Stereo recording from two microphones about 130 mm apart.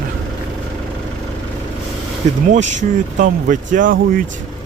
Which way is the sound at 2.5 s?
65° right (ahead or behind).